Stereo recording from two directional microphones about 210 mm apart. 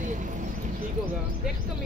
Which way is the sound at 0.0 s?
40° right (ahead or behind).